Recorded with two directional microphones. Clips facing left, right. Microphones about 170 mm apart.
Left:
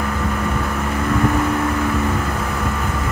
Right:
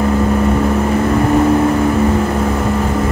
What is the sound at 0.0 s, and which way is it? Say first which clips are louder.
Vehicle: right 9 dB; 30° right (ahead or behind).